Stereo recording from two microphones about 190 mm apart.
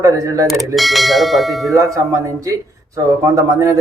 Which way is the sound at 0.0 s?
15° right (ahead or behind).